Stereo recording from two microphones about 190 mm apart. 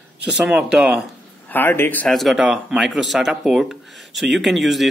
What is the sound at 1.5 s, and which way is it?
Speech, 10° left (ahead or behind).